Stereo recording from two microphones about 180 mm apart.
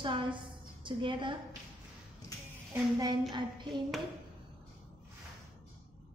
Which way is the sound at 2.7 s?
20° right (ahead or behind).